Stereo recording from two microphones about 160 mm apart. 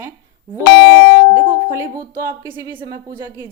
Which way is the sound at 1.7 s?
15° right (ahead or behind).